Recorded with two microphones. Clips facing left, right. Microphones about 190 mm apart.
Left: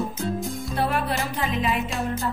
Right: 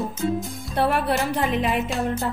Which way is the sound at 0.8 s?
60° right (ahead or behind).